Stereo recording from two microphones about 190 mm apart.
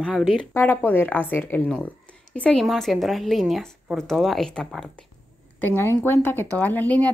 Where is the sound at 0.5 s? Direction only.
10° left (ahead or behind).